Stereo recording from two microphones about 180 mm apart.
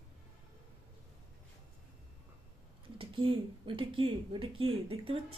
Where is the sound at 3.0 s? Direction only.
30° right (ahead or behind).